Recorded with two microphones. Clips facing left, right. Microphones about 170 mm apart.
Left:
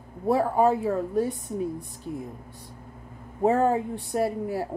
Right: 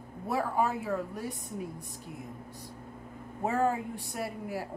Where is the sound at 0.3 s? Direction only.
30° left (ahead or behind).